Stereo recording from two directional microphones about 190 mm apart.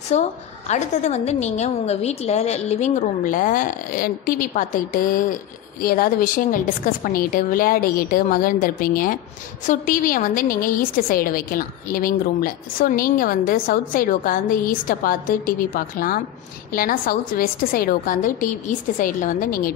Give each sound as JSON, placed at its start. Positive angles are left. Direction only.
{"t": 0.1, "sound": "a woman's voice", "side_deg": 35}